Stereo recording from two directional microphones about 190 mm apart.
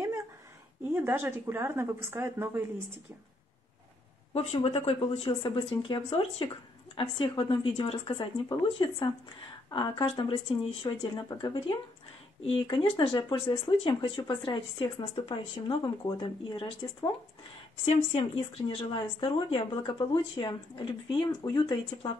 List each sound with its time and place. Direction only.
0.9 s a woman's voice: 10° right (ahead or behind)
4.3 s speech: 30° left (ahead or behind)